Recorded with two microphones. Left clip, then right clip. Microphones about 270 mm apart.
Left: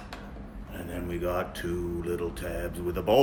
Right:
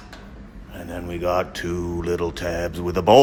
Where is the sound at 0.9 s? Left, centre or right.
Centre.